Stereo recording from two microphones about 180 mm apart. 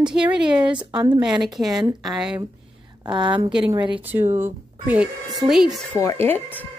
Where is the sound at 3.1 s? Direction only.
25° right (ahead or behind).